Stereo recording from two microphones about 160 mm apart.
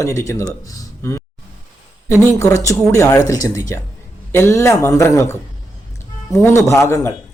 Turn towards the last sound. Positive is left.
turn(degrees=15)  # may be behind; listen again after turning